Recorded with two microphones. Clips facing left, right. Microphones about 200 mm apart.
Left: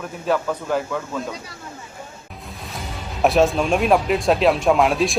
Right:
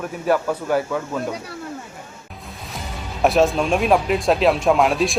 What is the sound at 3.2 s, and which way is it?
Speech, centre (ahead or behind).